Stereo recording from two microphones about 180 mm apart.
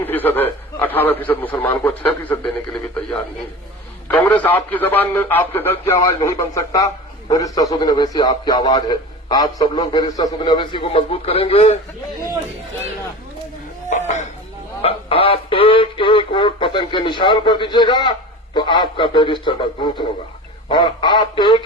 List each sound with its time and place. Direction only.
0.0 s a man's voice: 10° left (ahead or behind)
4.1 s a man's voice: 10° left (ahead or behind); by 11.8 s 35° left (ahead or behind)
13.9 s a sound: 40° left (ahead or behind)
14.8 s synthetic singing: 30° left (ahead or behind)
18.5 s a man's voice: 25° left (ahead or behind)